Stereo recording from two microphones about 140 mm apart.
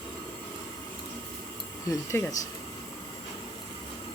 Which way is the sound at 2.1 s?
20° left (ahead or behind).